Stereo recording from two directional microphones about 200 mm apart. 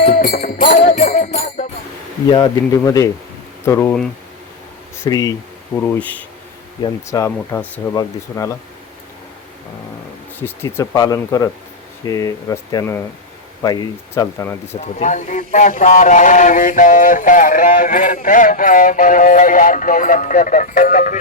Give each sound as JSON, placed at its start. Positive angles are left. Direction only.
{"t": 0.3, "sound": "music", "side_deg": 35}
{"t": 2.3, "sound": "speech", "side_deg": 20}
{"t": 5.0, "sound": "speech", "side_deg": 20}
{"t": 10.4, "sound": "speech", "side_deg": 10}
{"t": 14.8, "sound": "speech", "side_deg": 35}